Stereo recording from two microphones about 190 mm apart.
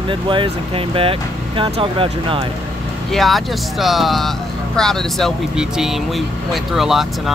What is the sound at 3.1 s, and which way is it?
Speech, centre (ahead or behind).